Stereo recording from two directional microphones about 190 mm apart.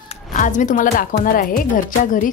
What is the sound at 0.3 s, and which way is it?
Speech, 40° left (ahead or behind).